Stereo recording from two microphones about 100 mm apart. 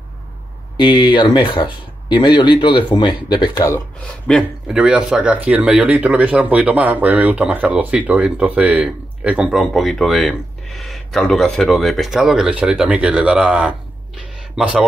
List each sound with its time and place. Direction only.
0.7 s speech: 50° left (ahead or behind)
4.1 s speech: 15° left (ahead or behind)
4.6 s speech: 10° right (ahead or behind)